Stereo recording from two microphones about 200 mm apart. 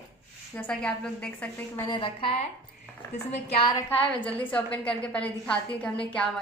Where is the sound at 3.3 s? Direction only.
25° left (ahead or behind).